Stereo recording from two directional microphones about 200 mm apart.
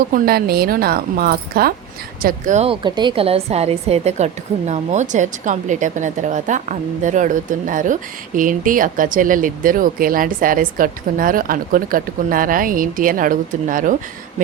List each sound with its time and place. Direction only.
0.1 s a woman's voice: 50° right (ahead or behind)
2.8 s a woman's voice: 20° right (ahead or behind); by 13.9 s 40° right (ahead or behind)